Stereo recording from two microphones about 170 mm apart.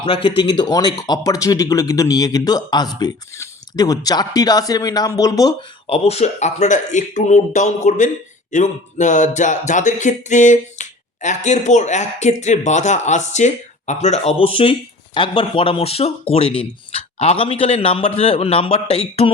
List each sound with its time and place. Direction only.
0.0 s a man's voice: 30° left (ahead or behind)
5.9 s a man's voice: 40° left (ahead or behind)